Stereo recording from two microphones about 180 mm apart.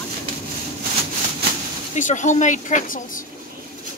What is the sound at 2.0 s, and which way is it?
A woman's voice, 45° left (ahead or behind).